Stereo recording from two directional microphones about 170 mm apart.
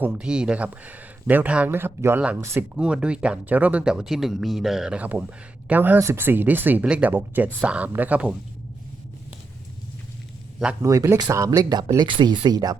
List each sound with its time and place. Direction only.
0.0 s speech: 10° right (ahead or behind)
10.8 s speech: 15° right (ahead or behind)